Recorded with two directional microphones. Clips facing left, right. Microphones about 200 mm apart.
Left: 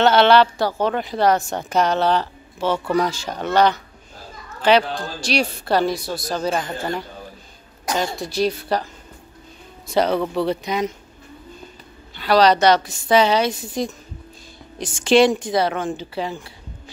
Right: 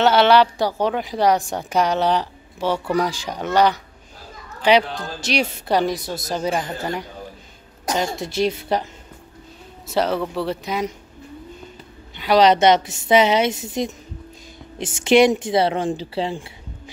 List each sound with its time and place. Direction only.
0.0 s a woman's voice: 10° right (ahead or behind)
7.9 s a woman's voice: 25° right (ahead or behind)
9.8 s speech: 5° right (ahead or behind)
12.2 s a woman's voice: 20° right (ahead or behind)